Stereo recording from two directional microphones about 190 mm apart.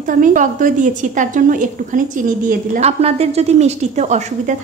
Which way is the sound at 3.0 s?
30° right (ahead or behind).